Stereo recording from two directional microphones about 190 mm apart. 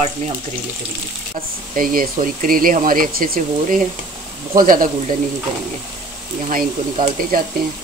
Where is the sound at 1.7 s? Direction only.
45° right (ahead or behind).